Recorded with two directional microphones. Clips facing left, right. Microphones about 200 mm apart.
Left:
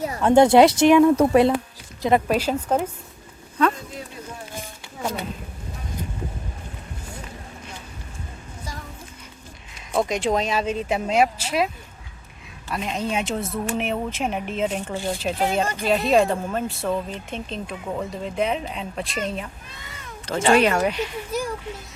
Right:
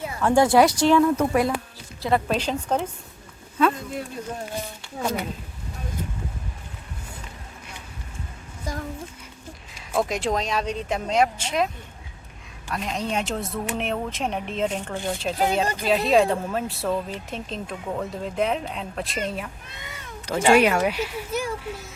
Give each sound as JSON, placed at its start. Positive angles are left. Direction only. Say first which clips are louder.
{"t": 0.2, "sound": "speech", "louder": "left 4 dB", "side_deg": 20}
{"t": 1.1, "sound": "a woman's voice", "louder": "left 5 dB", "side_deg": 30}
{"t": 2.3, "sound": "a woman's voice", "louder": "left 3 dB", "side_deg": 5}
{"t": 9.9, "sound": "speech", "louder": "left 2 dB", "side_deg": 0}
{"t": 12.7, "sound": "speech", "louder": "left 1 dB", "side_deg": 0}